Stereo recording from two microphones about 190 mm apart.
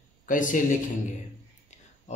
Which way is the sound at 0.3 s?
45° left (ahead or behind).